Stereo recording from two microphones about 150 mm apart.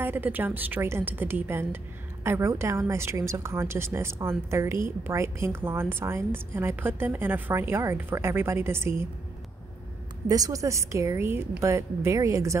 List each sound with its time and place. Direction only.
0.0 s a woman's voice: 15° right (ahead or behind)
10.2 s a woman's voice: 25° right (ahead or behind)